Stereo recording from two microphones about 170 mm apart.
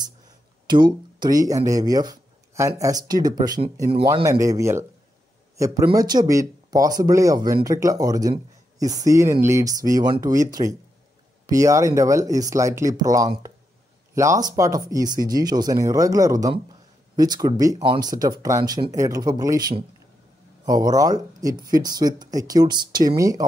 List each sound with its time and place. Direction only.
0.7 s speech: 25° right (ahead or behind)
5.9 s speech: 25° right (ahead or behind)